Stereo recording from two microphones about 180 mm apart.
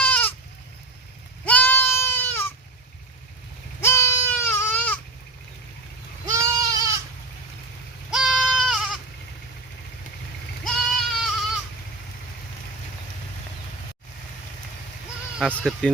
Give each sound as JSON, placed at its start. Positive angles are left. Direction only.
{"t": 0.0, "sound": "goat", "side_deg": 10}
{"t": 1.5, "sound": "goat", "side_deg": 10}
{"t": 3.8, "sound": "goat", "side_deg": 15}
{"t": 6.2, "sound": "goat", "side_deg": -15}
{"t": 8.1, "sound": "goat", "side_deg": 0}
{"t": 10.6, "sound": "sheep", "side_deg": 0}
{"t": 15.5, "sound": "speech", "side_deg": 5}